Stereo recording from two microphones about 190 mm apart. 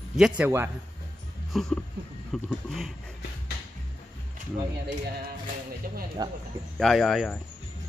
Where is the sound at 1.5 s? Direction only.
Centre (ahead or behind).